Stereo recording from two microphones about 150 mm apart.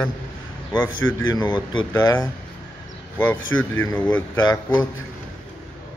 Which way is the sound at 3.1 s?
15° left (ahead or behind).